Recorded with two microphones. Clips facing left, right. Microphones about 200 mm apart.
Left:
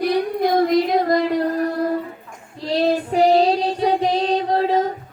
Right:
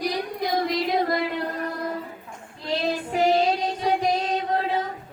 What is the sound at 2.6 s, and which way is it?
Child singing, 40° left (ahead or behind).